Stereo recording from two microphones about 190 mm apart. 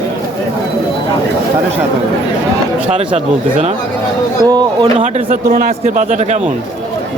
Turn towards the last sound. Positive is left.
turn(degrees=-40)  # may be behind; listen again after turning